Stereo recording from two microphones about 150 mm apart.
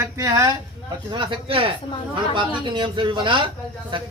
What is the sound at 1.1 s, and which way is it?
A man's voice, 35° right (ahead or behind).